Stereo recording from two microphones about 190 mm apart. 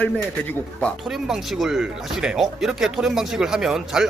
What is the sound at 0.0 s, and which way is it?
Speech, 5° left (ahead or behind).